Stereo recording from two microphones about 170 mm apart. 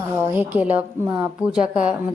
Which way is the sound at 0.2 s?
10° right (ahead or behind).